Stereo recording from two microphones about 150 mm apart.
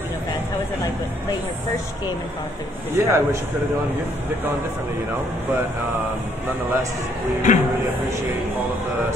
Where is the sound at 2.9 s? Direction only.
20° right (ahead or behind).